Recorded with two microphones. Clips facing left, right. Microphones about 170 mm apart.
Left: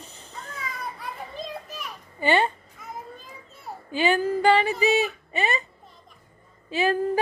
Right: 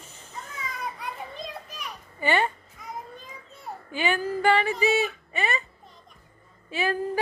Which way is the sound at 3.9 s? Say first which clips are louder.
Left 4 dB; 35° left (ahead or behind).